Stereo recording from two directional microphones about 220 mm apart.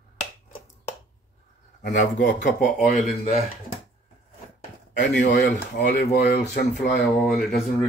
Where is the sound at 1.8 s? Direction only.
35° left (ahead or behind).